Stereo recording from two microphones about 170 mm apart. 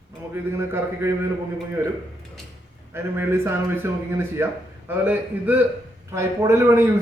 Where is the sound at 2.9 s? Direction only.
15° right (ahead or behind).